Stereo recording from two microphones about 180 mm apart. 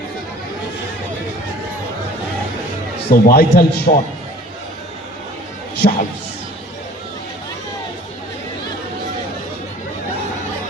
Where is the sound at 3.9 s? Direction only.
40° left (ahead or behind).